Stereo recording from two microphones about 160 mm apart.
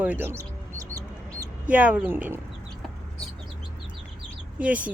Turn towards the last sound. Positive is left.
turn(degrees=-10)  # may be behind; listen again after turning